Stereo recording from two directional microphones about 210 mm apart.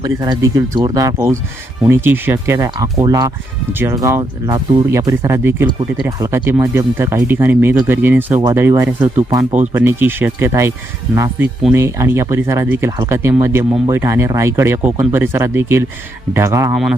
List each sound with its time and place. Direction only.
0.0 s speech: 20° right (ahead or behind)